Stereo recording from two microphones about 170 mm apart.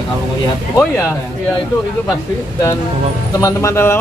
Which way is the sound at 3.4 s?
20° left (ahead or behind).